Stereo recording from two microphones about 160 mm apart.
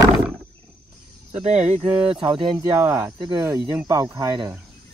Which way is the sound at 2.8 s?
15° right (ahead or behind).